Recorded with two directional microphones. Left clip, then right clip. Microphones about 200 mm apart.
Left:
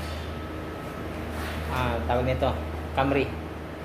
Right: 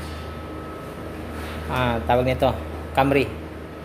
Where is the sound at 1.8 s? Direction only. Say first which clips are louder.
Right 6 dB; 50° right (ahead or behind).